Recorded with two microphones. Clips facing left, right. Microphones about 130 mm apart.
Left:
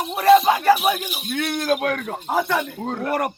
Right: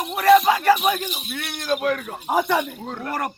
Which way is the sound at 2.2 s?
15° right (ahead or behind).